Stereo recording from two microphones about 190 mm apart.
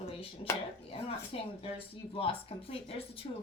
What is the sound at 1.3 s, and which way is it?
A child's voice, 30° left (ahead or behind).